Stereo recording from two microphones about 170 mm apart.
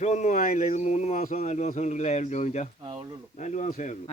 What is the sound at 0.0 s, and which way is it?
Speech, 45° left (ahead or behind).